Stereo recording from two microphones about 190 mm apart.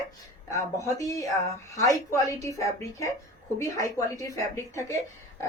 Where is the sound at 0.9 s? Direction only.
15° left (ahead or behind).